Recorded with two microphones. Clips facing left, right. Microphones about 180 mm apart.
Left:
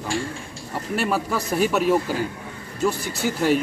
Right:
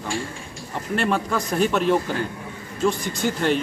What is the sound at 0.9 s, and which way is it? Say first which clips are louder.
Speech: right 1 dB; 5° left (ahead or behind).